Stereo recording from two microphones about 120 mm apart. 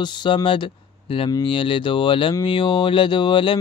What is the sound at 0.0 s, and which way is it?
Speech, 40° left (ahead or behind).